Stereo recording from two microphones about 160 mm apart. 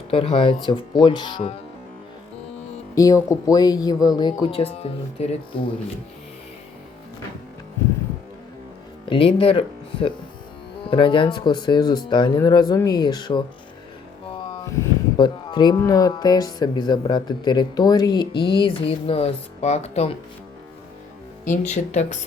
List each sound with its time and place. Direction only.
0.1 s speech: 35° left (ahead or behind)
2.9 s speech: 20° left (ahead or behind)
4.6 s speech: 40° left (ahead or behind)
9.0 s speech: 35° left (ahead or behind)
14.3 s a sound: 30° left (ahead or behind)
15.2 s speech: 25° left (ahead or behind)
21.4 s speech: 50° left (ahead or behind)